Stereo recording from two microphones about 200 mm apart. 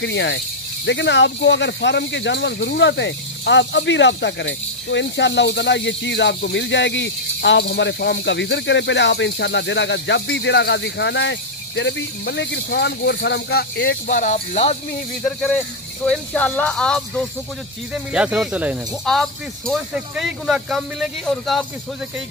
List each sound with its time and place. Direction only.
0.0 s speech: 65° left (ahead or behind); by 14.8 s 35° left (ahead or behind)
15.2 s speech: 5° left (ahead or behind)